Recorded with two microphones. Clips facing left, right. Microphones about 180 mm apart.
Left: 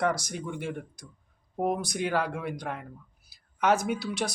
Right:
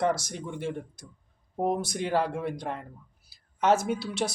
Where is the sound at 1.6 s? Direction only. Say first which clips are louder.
Even; 25° right (ahead or behind).